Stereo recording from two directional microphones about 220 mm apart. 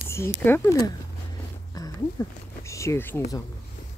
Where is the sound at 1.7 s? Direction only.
15° left (ahead or behind).